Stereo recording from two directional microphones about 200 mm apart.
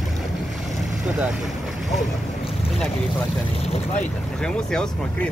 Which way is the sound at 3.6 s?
30° left (ahead or behind).